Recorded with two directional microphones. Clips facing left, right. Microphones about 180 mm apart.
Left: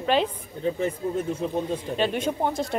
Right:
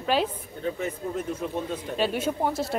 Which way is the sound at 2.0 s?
5° right (ahead or behind).